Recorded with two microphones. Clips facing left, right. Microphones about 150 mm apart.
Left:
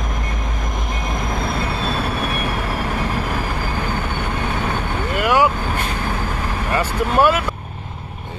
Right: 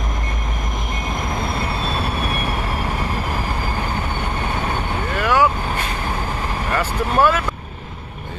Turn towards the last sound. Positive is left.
turn(degrees=20)  # may be behind; listen again after turning